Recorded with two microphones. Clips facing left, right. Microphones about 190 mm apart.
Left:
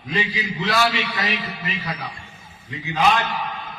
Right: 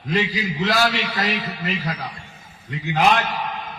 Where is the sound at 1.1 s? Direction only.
45° right (ahead or behind).